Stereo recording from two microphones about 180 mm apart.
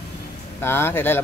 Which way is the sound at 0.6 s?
15° left (ahead or behind).